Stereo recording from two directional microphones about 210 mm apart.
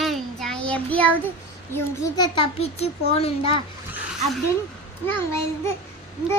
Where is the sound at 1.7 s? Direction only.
15° left (ahead or behind).